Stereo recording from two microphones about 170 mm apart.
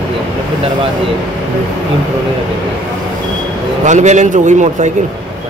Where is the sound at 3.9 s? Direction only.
45° right (ahead or behind).